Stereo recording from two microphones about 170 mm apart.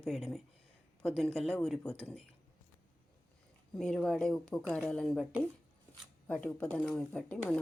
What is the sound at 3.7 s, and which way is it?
Speech, 5° left (ahead or behind).